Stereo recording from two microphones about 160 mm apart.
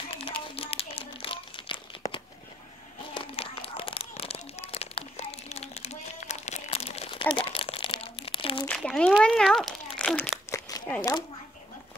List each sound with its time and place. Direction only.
0.1 s crumpling: 35° left (ahead or behind)
3.2 s a sound: 35° left (ahead or behind)
8.6 s crumpling: 5° left (ahead or behind)